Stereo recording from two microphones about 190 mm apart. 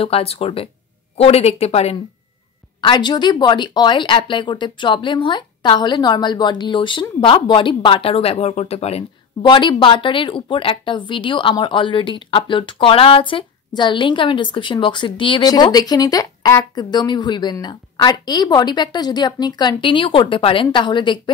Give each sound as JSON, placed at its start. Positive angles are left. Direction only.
{"t": 0.0, "sound": "speech", "side_deg": 30}